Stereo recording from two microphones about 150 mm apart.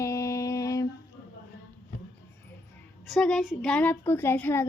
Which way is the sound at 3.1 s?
5° left (ahead or behind).